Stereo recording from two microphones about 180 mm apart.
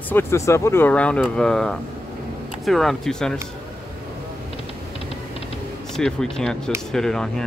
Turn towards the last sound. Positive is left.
turn(degrees=5)  # may be behind; listen again after turning